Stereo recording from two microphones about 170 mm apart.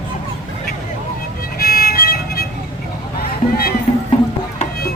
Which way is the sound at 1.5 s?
60° left (ahead or behind).